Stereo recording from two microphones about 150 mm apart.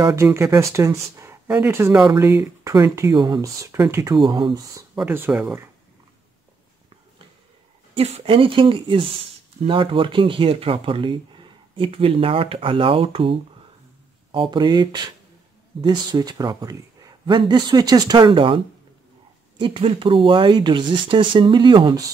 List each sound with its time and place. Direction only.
0.0 s a man's voice: 20° right (ahead or behind)
4.9 s speech: 15° right (ahead or behind)
7.9 s a man's voice: 40° right (ahead or behind)
19.6 s speech: 35° right (ahead or behind)